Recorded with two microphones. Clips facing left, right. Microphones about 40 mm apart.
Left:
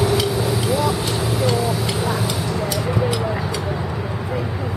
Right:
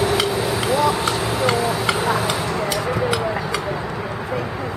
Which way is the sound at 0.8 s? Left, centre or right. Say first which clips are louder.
Right 2 dB; right.